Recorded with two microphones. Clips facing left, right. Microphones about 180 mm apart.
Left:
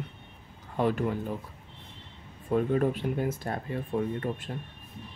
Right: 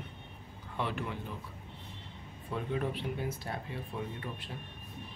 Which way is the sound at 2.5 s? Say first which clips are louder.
Left 9 dB; 50° left (ahead or behind).